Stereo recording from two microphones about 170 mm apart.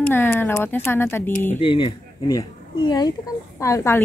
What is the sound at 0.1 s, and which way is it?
Speech, 15° left (ahead or behind).